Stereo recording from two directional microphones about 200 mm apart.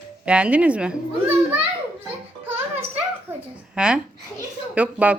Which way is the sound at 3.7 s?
5° right (ahead or behind).